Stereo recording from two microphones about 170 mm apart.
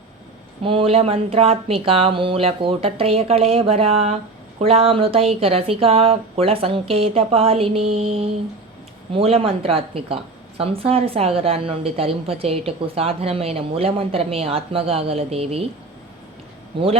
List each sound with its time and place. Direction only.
0.6 s a woman's voice: 30° right (ahead or behind)